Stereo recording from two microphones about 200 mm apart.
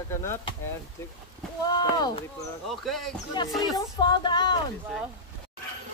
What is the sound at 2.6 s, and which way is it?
Speech, centre (ahead or behind).